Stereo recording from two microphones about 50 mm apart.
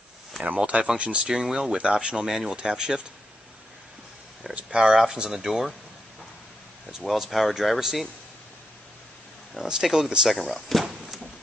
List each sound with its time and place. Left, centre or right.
0.4 s speech: right
1.3 s speech: centre
4.6 s speech: centre
7.1 s speech: centre
9.7 s speech: centre